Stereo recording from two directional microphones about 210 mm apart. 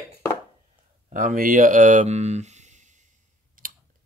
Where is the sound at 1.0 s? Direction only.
40° right (ahead or behind).